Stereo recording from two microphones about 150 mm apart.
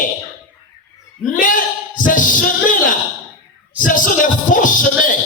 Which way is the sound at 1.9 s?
60° left (ahead or behind).